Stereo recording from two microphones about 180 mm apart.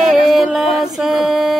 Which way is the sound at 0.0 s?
Centre (ahead or behind).